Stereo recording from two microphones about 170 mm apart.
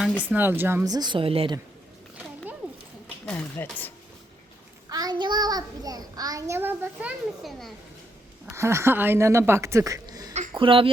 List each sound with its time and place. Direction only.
0.3 s a child's voice: 10° right (ahead or behind); by 1.5 s 35° right (ahead or behind)
3.2 s speech: 5° left (ahead or behind)
4.9 s a child's voice: 20° right (ahead or behind); by 7.7 s 5° right (ahead or behind)
8.4 s speech: 15° right (ahead or behind); by 10.8 s 30° right (ahead or behind)